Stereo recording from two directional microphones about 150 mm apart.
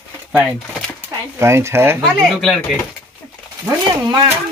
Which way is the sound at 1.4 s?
15° right (ahead or behind).